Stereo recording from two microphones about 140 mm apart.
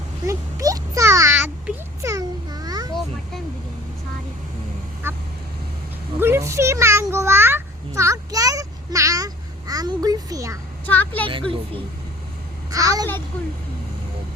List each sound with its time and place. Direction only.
0.3 s a sound: 25° right (ahead or behind)
2.0 s babbling: 25° right (ahead or behind)
5.0 s quack: 15° right (ahead or behind)
6.1 s a sound: 15° right (ahead or behind)
10.8 s a woman's voice: 10° left (ahead or behind)
11.3 s speech: 40° right (ahead or behind)
12.7 s a child's voice: 25° right (ahead or behind)